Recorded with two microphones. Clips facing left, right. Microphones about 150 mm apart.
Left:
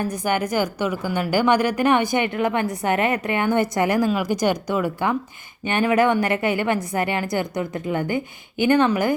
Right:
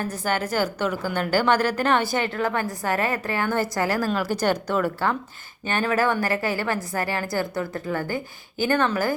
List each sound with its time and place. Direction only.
0.0 s a woman's voice: 15° left (ahead or behind)